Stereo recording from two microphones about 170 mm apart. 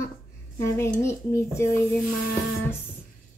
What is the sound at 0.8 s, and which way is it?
A woman's voice, 15° left (ahead or behind).